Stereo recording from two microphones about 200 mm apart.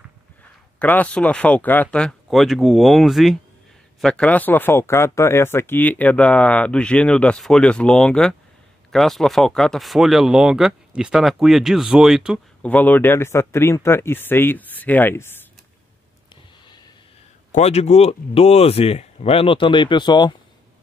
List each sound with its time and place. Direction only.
0.7 s speech: 10° left (ahead or behind)
12.7 s speech: 10° left (ahead or behind)
17.5 s speech: 35° left (ahead or behind)